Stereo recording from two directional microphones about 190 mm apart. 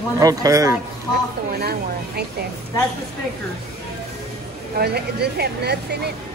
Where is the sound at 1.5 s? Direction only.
55° right (ahead or behind).